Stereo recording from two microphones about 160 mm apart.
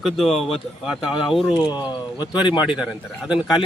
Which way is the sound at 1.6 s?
30° left (ahead or behind).